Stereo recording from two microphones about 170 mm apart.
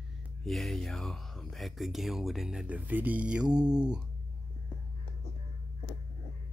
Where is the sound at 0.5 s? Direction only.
Centre (ahead or behind).